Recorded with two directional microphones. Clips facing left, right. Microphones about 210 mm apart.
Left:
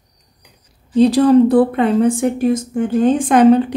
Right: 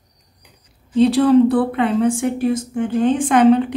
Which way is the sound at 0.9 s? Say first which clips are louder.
Left 2 dB; 40° left (ahead or behind).